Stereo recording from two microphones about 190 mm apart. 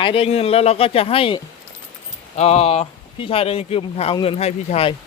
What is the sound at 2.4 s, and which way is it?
Speech, 35° left (ahead or behind).